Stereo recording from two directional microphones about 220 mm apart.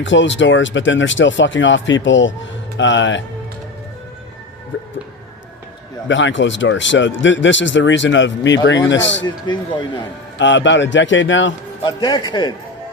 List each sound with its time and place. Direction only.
0.0 s speech: 55° left (ahead or behind)
6.1 s speech: 55° left (ahead or behind)
10.3 s speech: 55° left (ahead or behind)
11.8 s a man's voice: 20° left (ahead or behind)